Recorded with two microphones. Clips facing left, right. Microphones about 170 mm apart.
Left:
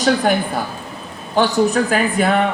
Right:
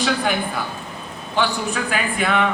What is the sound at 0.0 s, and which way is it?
A woman's voice, 40° left (ahead or behind).